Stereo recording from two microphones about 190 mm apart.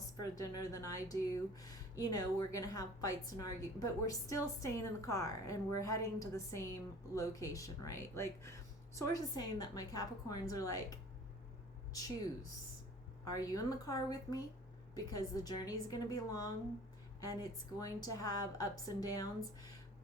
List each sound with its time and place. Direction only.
0.2 s speech: 20° left (ahead or behind)
13.2 s a woman's voice: 20° left (ahead or behind)